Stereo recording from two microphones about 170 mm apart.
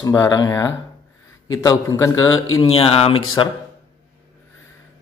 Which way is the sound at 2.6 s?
35° left (ahead or behind).